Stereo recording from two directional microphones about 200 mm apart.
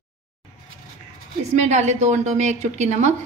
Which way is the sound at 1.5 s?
35° right (ahead or behind).